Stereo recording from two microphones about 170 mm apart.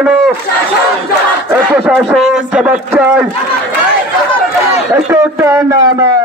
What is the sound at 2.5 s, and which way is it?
Speech, 5° right (ahead or behind).